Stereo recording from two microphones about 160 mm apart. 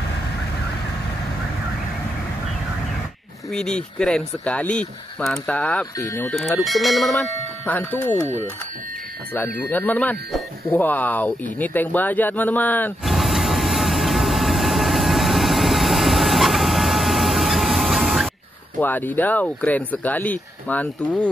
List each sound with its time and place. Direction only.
3.5 s speech: 5° left (ahead or behind)
6.6 s speech: centre (ahead or behind)
9.3 s speech: 10° left (ahead or behind)
13.0 s vehicle: centre (ahead or behind)
18.8 s speech: 10° left (ahead or behind)